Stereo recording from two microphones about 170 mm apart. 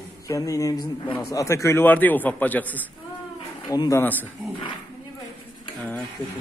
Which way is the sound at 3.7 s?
20° left (ahead or behind).